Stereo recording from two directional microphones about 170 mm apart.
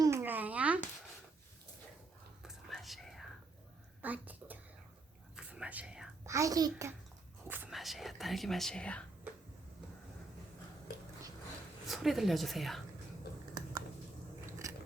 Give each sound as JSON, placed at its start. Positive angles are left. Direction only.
{"t": 0.0, "sound": "a sound", "side_deg": -15}
{"t": 2.4, "sound": "whispering", "side_deg": 0}
{"t": 4.0, "sound": "a sound", "side_deg": -10}
{"t": 5.4, "sound": "whispering", "side_deg": -5}
{"t": 6.2, "sound": "a child's voice", "side_deg": -20}
{"t": 7.4, "sound": "whispering", "side_deg": -10}
{"t": 11.9, "sound": "a woman's voice", "side_deg": 0}
{"t": 14.4, "sound": "biting", "side_deg": -15}